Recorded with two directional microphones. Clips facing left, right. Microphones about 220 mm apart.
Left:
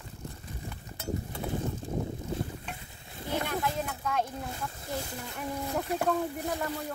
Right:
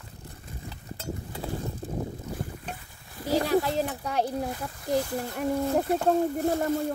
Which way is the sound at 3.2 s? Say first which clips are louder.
Right 8 dB; 35° right (ahead or behind).